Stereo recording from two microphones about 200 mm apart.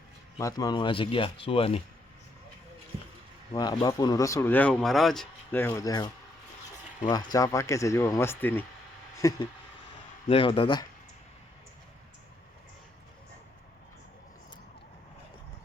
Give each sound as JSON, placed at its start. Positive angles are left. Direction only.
{"t": 0.3, "sound": "speech", "side_deg": 15}
{"t": 3.5, "sound": "speech", "side_deg": 20}
{"t": 7.1, "sound": "speech", "side_deg": 20}